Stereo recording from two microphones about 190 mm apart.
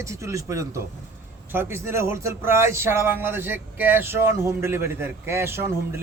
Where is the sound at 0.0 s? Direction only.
15° right (ahead or behind).